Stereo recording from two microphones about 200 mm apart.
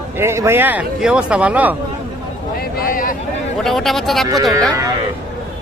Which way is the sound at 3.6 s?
Centre (ahead or behind).